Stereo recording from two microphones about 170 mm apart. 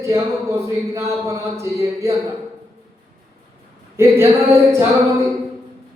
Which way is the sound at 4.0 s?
15° right (ahead or behind).